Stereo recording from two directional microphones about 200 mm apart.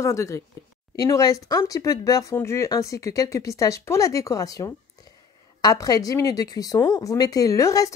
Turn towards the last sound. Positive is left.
turn(degrees=15)  # may be behind; listen again after turning